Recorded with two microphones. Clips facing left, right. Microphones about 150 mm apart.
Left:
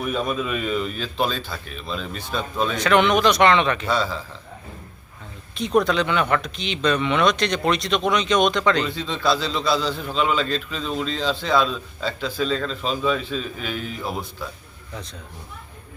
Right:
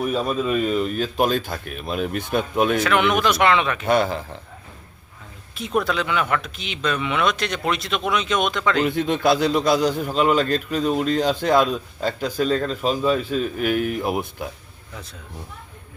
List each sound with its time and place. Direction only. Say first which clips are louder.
0.0 s a man's voice: right 2 dB; 35° right (ahead or behind); by 2.7 s 55° right (ahead or behind)
2.8 s speech: left 2 dB; 5° right (ahead or behind)
3.8 s speech: right 4 dB; 55° right (ahead or behind)
5.5 s speech: left 3 dB; 5° right (ahead or behind)
8.8 s a man's voice: right 5 dB; 50° right (ahead or behind)